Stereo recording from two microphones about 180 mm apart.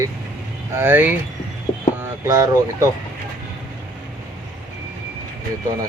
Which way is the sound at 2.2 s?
20° right (ahead or behind).